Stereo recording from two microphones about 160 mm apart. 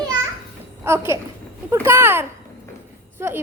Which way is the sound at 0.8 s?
15° right (ahead or behind).